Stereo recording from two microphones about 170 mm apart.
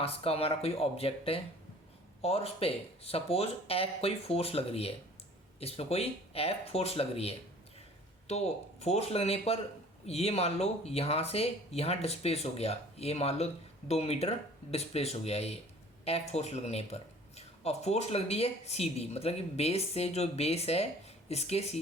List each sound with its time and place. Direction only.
0.0 s speech: 35° left (ahead or behind)